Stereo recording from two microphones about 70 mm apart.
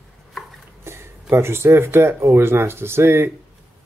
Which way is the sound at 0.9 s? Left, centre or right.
Right.